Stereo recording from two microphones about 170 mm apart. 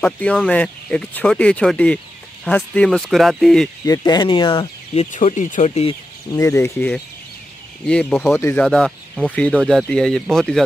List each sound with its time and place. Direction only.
0.0 s speech: 10° left (ahead or behind)
3.8 s speech: 20° left (ahead or behind)
5.1 s speech: 45° left (ahead or behind)
6.3 s speech: 15° left (ahead or behind); by 10.6 s centre (ahead or behind)